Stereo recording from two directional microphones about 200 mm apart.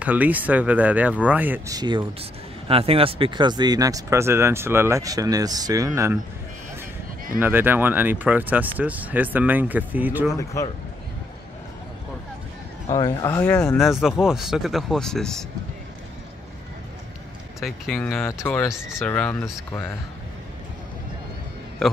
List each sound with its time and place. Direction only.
0.0 s speech: 10° right (ahead or behind)
1.8 s speech: 20° right (ahead or behind)
7.3 s speech: 10° right (ahead or behind)
10.3 s speech: 15° left (ahead or behind)
12.9 s speech: 15° left (ahead or behind)
13.7 s speech: centre (ahead or behind)
17.6 s speech: centre (ahead or behind)